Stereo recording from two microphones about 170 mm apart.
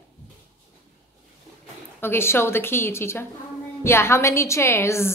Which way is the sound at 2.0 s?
15° left (ahead or behind).